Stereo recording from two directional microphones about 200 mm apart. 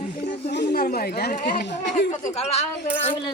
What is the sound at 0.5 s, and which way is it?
A woman's voice, 50° left (ahead or behind).